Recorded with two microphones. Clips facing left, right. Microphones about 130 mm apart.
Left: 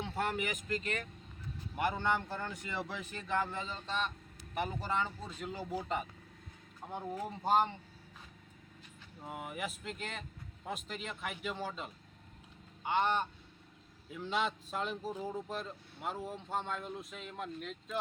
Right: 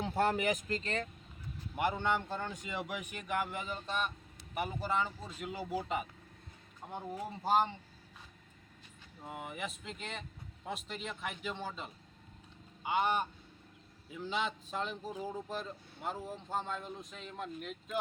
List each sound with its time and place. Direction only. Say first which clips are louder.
0.2 s speech: right 5 dB; 35° right (ahead or behind)
1.7 s a man's voice: right 1 dB; 20° right (ahead or behind)
6.8 s speech: left 1 dB; centre (ahead or behind)
9.2 s speech: left 1 dB; centre (ahead or behind)